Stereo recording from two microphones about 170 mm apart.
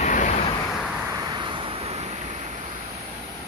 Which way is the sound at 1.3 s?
30° right (ahead or behind).